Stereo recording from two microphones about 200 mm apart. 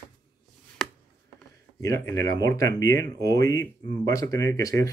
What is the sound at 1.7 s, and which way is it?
Speech, 15° left (ahead or behind).